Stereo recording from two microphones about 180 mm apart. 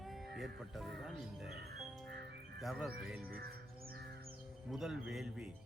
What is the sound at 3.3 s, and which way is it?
Speech, 60° right (ahead or behind).